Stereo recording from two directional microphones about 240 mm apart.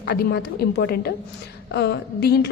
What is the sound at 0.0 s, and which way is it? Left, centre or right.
A woman's voice, left.